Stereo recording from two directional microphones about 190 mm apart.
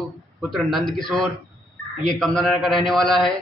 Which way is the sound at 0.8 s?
25° left (ahead or behind).